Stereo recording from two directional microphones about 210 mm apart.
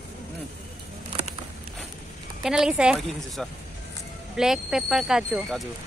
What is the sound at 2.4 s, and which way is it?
Speech, 5° right (ahead or behind).